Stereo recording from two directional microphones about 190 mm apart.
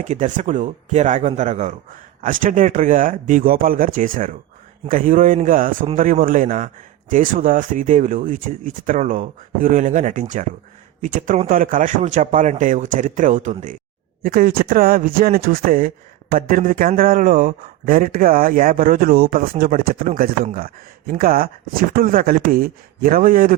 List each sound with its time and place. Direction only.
0.0 s a man's voice: 40° right (ahead or behind)